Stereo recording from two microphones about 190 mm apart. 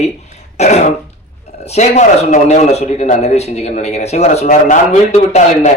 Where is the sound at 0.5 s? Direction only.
35° left (ahead or behind).